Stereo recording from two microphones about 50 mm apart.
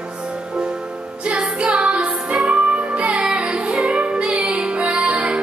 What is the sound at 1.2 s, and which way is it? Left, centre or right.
Music, right.